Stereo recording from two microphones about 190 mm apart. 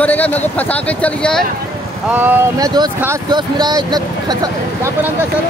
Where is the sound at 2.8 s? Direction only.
20° right (ahead or behind).